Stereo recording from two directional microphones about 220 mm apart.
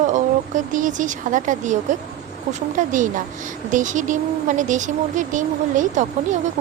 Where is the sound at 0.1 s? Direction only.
35° right (ahead or behind).